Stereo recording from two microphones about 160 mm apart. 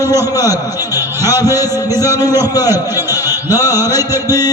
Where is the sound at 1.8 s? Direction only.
20° left (ahead or behind).